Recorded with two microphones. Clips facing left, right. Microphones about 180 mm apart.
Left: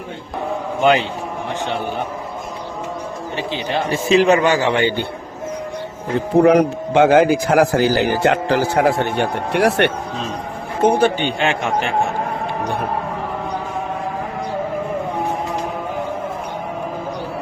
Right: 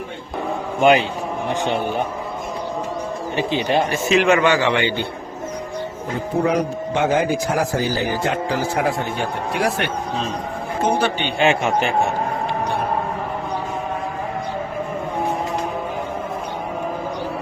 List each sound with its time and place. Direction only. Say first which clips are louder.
0.8 s speech: right 1 dB; 15° right (ahead or behind)
3.3 s speech: right 4 dB; 15° right (ahead or behind)
3.8 s a man's voice: left 8 dB; 30° left (ahead or behind)
6.4 s a man's voice: left 7 dB; 70° left (ahead or behind)
10.8 s a man's voice: left 6 dB; 50° left (ahead or behind)
11.3 s speech: right 2 dB; 5° right (ahead or behind)